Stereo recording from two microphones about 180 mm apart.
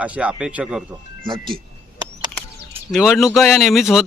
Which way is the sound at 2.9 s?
Centre (ahead or behind).